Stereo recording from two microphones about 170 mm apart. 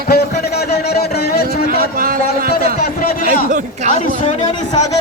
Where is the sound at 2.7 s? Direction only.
60° left (ahead or behind).